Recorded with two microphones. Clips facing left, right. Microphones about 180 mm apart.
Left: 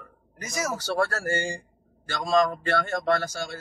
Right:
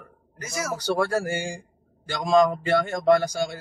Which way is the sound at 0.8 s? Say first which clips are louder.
Right 6 dB; 15° right (ahead or behind).